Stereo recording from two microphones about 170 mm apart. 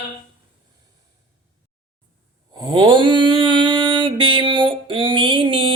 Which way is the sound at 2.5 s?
30° right (ahead or behind).